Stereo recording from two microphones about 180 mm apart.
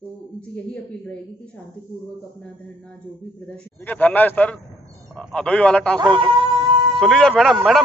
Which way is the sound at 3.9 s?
10° left (ahead or behind).